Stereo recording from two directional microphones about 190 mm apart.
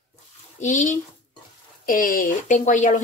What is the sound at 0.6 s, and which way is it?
A woman's voice, 40° left (ahead or behind).